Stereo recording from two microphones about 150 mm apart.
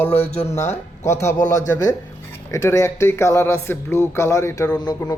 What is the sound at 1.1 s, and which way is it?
A man's voice, 20° left (ahead or behind).